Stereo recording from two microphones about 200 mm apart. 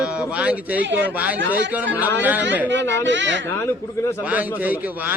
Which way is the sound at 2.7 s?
65° right (ahead or behind).